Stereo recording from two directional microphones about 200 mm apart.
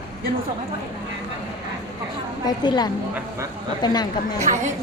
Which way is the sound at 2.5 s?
20° left (ahead or behind).